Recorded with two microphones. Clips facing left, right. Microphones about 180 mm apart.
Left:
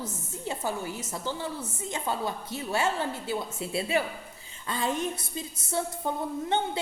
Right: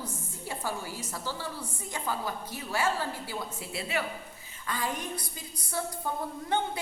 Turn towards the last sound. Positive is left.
turn(degrees=25)  # may be behind; listen again after turning